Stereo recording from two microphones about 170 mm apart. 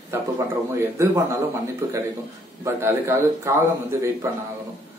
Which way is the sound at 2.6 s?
15° right (ahead or behind).